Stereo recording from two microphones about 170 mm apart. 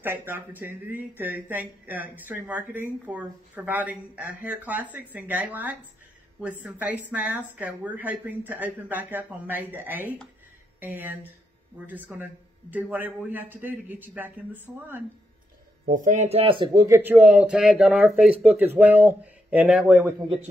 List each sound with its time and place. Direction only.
0.0 s a woman's voice: 15° right (ahead or behind)
15.8 s speech: 50° right (ahead or behind); by 16.8 s 30° right (ahead or behind)
16.8 s a woman's voice: 15° right (ahead or behind)